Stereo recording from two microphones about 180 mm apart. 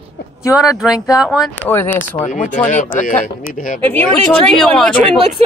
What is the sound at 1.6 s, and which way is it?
Speech, 10° left (ahead or behind).